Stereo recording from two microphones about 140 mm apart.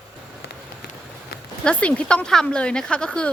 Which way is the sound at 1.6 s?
10° left (ahead or behind).